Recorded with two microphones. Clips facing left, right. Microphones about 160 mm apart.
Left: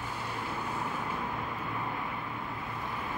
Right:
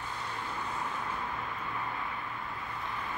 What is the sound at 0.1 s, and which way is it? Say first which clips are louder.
Vehicle: left 1 dB; 10° left (ahead or behind).